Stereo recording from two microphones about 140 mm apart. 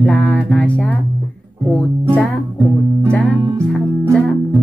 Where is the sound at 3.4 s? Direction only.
20° right (ahead or behind).